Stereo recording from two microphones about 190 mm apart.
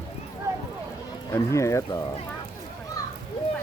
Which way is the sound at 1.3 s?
15° left (ahead or behind).